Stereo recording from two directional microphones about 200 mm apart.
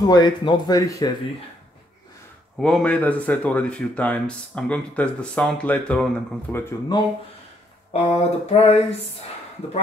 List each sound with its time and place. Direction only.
0.0 s speech: 20° left (ahead or behind)
2.6 s speech: 5° left (ahead or behind)
7.9 s a sound: 30° left (ahead or behind)